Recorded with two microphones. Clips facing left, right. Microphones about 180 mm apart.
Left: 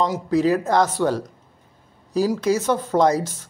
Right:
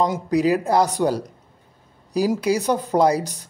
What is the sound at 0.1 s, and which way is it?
Speech, 15° right (ahead or behind).